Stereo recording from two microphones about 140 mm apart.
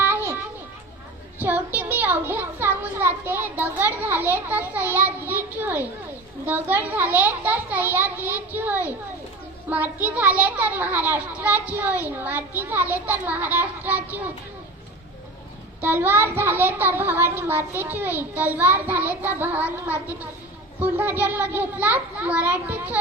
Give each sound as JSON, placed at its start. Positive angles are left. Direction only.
{"t": 0.0, "sound": "children playing", "side_deg": -15}
{"t": 1.4, "sound": "a sound", "side_deg": -15}
{"t": 6.4, "sound": "a child's voice", "side_deg": -10}
{"t": 15.8, "sound": "a child's voice", "side_deg": -15}